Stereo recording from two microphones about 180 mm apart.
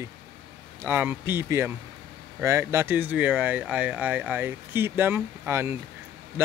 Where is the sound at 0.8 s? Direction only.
10° right (ahead or behind).